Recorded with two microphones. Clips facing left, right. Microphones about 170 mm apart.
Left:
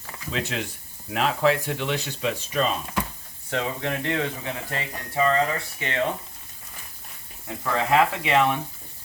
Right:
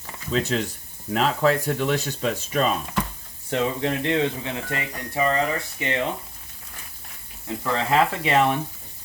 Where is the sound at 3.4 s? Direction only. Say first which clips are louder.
Right 4 dB; 25° right (ahead or behind).